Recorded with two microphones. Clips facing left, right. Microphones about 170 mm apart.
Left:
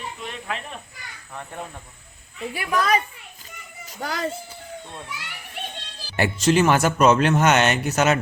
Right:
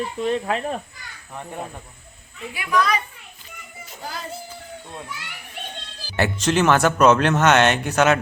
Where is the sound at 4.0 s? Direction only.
80° left.